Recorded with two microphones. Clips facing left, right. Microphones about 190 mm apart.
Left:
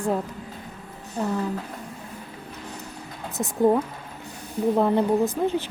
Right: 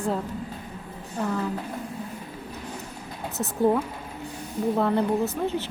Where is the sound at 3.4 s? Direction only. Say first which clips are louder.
Left 2 dB; 15° left (ahead or behind).